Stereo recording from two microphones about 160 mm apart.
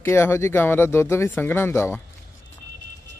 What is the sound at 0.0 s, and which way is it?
Speech, 15° left (ahead or behind).